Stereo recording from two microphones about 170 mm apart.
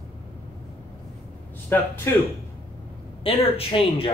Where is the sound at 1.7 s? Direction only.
10° left (ahead or behind).